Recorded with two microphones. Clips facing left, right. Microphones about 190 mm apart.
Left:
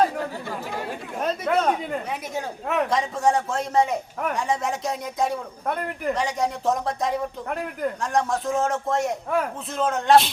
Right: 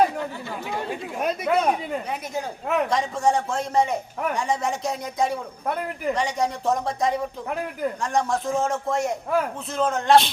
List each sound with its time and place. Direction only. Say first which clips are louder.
1.2 s speech: even; 10° right (ahead or behind)
1.8 s speech: even; centre (ahead or behind)